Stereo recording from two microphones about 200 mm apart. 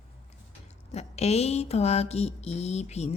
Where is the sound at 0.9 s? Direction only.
30° left (ahead or behind).